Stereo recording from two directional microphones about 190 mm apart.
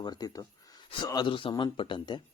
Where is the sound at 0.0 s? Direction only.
20° left (ahead or behind).